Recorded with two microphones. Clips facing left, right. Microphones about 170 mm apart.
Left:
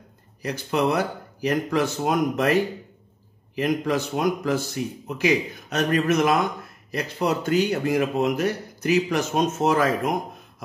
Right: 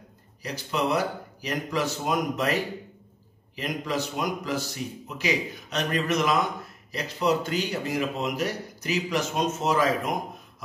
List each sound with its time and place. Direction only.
0.4 s speech: 55° left (ahead or behind)
3.5 s speech: 50° left (ahead or behind)